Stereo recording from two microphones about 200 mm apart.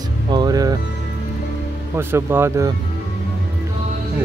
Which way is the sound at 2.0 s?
10° right (ahead or behind).